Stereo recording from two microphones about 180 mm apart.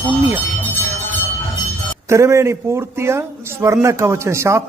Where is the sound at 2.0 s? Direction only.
15° right (ahead or behind).